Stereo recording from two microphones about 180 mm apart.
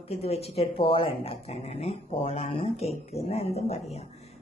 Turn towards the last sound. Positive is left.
turn(degrees=35)  # may be behind; listen again after turning